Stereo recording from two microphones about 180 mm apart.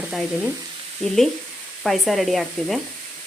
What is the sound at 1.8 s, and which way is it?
Speech, centre (ahead or behind).